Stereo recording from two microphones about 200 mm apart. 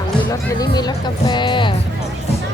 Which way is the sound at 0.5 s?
20° left (ahead or behind).